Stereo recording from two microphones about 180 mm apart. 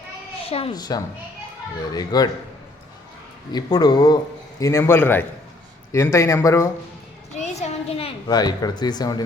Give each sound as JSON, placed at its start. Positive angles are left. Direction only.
{"t": 0.4, "sound": "speech", "side_deg": 30}
{"t": 3.5, "sound": "speech", "side_deg": 20}
{"t": 7.3, "sound": "a sound", "side_deg": 40}
{"t": 8.3, "sound": "speech", "side_deg": 20}